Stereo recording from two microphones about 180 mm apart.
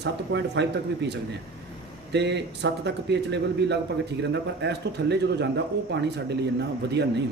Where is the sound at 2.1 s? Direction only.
70° right (ahead or behind).